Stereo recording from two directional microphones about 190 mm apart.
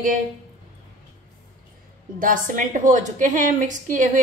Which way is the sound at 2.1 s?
45° right (ahead or behind).